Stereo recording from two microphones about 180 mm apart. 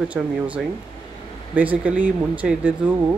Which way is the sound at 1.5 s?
10° right (ahead or behind).